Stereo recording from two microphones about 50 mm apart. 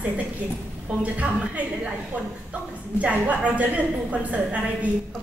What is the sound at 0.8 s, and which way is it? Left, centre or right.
A woman's voice, right.